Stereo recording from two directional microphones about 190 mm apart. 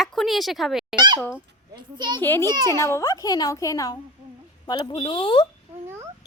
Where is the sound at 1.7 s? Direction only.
25° right (ahead or behind).